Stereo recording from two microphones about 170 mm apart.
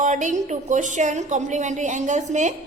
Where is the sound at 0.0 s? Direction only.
45° right (ahead or behind).